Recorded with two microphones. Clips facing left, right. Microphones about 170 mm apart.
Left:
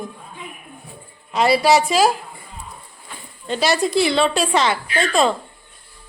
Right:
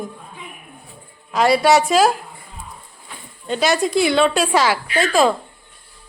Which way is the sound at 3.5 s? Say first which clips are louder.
Right 1 dB; centre (ahead or behind).